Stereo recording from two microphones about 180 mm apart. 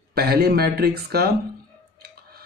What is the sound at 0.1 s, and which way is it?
Speech, 60° right (ahead or behind).